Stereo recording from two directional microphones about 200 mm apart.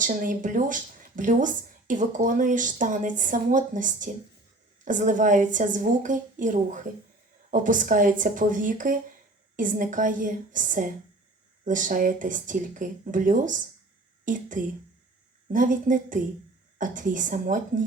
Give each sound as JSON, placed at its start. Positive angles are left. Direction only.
{"t": 0.0, "sound": "speech", "side_deg": -40}